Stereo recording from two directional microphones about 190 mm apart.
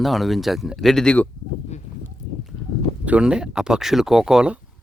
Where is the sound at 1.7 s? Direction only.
35° left (ahead or behind).